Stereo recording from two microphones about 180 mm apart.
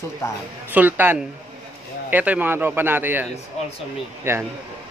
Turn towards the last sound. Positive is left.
turn(degrees=-15)  # may be behind; listen again after turning